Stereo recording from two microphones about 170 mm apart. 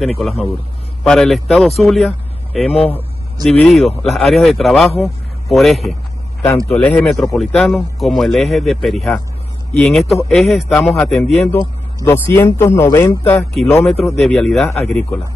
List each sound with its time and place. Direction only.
0.0 s speech: centre (ahead or behind)
11.5 s speech: 15° left (ahead or behind)
14.1 s speech: centre (ahead or behind)